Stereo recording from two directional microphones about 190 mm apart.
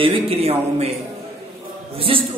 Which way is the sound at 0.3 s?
30° right (ahead or behind).